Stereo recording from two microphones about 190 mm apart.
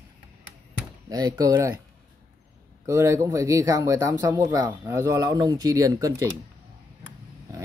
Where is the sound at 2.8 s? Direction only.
15° right (ahead or behind).